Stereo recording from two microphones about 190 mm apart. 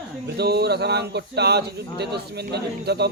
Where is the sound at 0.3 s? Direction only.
60° right (ahead or behind).